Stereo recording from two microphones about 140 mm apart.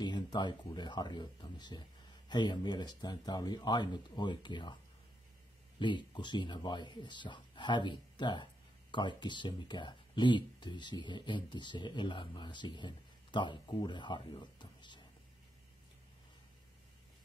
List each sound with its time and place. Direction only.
0.0 s speech: 30° left (ahead or behind)
5.8 s speech: 35° left (ahead or behind)